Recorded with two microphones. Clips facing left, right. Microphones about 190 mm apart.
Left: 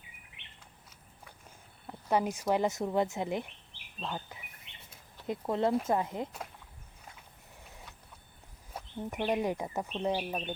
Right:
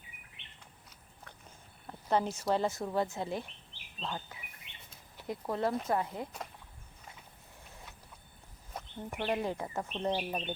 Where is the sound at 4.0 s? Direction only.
10° left (ahead or behind).